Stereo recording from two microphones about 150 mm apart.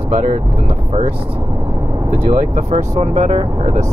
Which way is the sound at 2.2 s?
55° right (ahead or behind).